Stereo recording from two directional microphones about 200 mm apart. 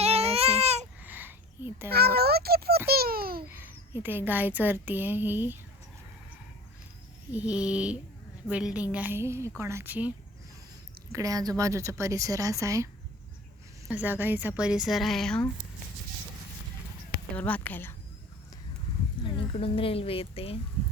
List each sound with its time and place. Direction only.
0.0 s baby cry: 30° right (ahead or behind)
1.0 s a sound: 10° right (ahead or behind)
1.9 s a sound: 50° right (ahead or behind)
3.4 s speech: 10° right (ahead or behind)
7.3 s speech: 5° right (ahead or behind)
11.1 s speech: 15° right (ahead or behind); by 15.4 s 5° left (ahead or behind)
17.3 s speech: 5° left (ahead or behind)
19.2 s speech: 25° left (ahead or behind)